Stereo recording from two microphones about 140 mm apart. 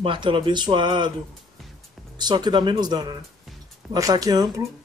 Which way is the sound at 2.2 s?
30° right (ahead or behind).